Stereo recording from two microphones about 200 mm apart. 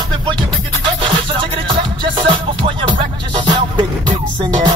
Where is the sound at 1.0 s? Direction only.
25° right (ahead or behind).